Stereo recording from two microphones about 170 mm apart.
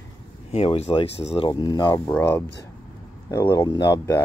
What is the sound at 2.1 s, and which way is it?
Speech, 10° left (ahead or behind).